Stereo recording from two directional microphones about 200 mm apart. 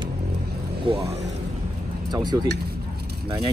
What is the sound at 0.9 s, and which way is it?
Speech, 25° right (ahead or behind).